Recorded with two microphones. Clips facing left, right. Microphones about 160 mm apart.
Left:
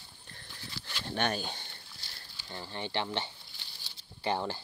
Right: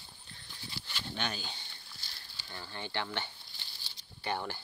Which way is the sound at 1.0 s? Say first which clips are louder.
Left 7 dB; 55° left (ahead or behind).